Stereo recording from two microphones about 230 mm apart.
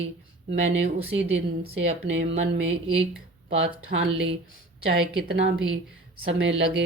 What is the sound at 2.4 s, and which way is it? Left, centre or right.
A woman's voice, right.